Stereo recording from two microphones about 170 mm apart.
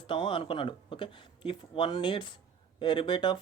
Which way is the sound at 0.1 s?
30° left (ahead or behind).